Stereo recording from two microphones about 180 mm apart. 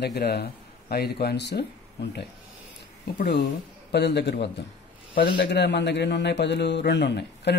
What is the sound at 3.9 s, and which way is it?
Speech, 70° left (ahead or behind).